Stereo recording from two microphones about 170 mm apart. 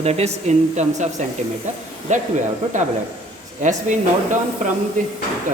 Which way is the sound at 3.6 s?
45° right (ahead or behind).